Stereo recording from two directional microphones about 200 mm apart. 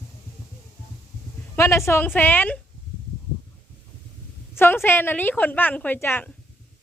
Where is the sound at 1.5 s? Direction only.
15° left (ahead or behind).